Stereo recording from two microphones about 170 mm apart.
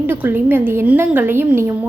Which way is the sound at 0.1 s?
10° right (ahead or behind).